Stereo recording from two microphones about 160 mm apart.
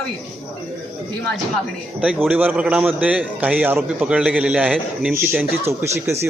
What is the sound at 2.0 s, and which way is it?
A man's voice, 10° right (ahead or behind).